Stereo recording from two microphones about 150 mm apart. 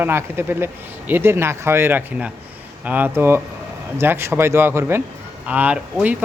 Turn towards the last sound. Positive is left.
turn(degrees=-10)  # may be behind; listen again after turning